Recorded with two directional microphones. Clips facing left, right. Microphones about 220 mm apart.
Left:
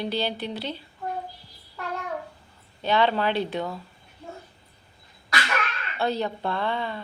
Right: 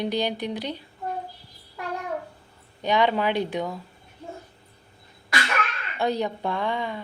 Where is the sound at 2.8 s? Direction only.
15° right (ahead or behind).